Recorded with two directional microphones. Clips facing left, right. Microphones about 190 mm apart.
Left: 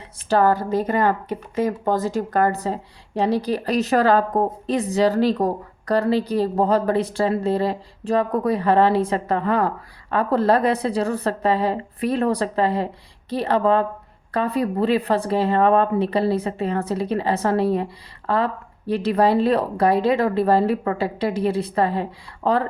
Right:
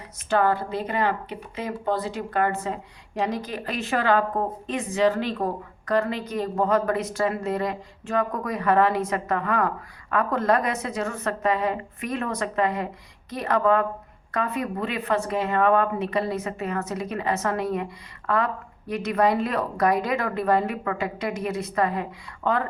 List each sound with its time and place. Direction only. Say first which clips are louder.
0.3 s a woman's voice: left 4 dB; 40° left (ahead or behind)